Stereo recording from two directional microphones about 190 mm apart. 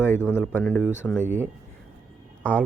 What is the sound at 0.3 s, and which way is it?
Speech, 5° right (ahead or behind).